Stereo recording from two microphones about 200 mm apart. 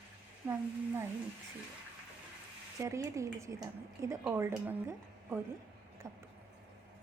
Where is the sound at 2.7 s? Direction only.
15° right (ahead or behind).